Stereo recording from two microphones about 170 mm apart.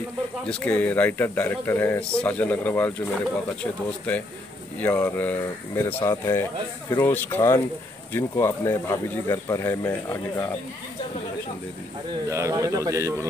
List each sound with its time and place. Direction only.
0.5 s speech: 5° left (ahead or behind)
4.7 s speech: 10° left (ahead or behind)
12.3 s a man's voice: 20° right (ahead or behind)